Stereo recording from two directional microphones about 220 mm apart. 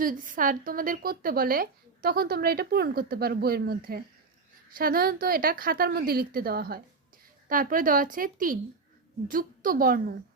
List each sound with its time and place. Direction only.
0.0 s a woman's voice: 40° right (ahead or behind)